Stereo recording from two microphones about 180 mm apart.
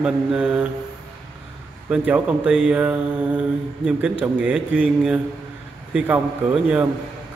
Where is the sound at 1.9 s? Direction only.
5° right (ahead or behind).